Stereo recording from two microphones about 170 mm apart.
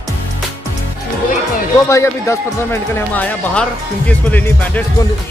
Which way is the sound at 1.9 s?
15° left (ahead or behind).